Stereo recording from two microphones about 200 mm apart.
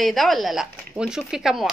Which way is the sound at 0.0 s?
Centre (ahead or behind).